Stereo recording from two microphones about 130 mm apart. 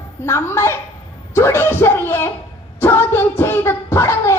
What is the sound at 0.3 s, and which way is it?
A woman's voice, 20° left (ahead or behind).